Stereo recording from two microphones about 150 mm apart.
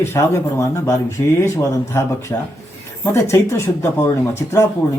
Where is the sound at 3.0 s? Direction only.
15° left (ahead or behind).